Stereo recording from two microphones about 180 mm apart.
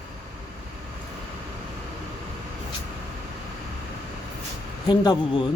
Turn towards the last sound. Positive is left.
turn(degrees=25)  # may be behind; listen again after turning